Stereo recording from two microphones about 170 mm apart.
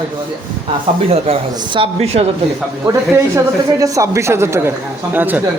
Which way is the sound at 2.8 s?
20° right (ahead or behind).